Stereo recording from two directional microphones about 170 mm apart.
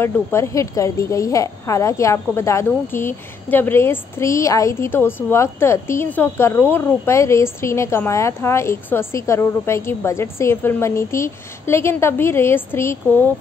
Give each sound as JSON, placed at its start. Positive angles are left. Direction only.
{"t": 0.0, "sound": "a woman's voice", "side_deg": 15}